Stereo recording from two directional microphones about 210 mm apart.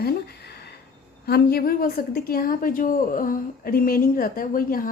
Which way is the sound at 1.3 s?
50° left (ahead or behind).